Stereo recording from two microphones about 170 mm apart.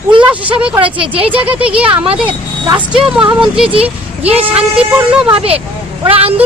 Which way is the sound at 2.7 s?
5° right (ahead or behind).